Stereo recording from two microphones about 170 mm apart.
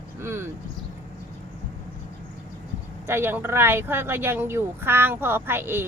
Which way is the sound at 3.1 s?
15° right (ahead or behind).